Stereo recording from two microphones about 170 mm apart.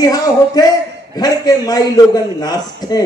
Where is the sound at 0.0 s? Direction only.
20° left (ahead or behind).